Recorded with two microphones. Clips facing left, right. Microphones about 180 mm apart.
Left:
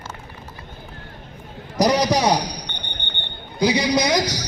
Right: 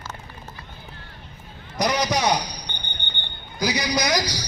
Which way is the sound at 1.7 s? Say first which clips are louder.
Left 5 dB; 35° left (ahead or behind).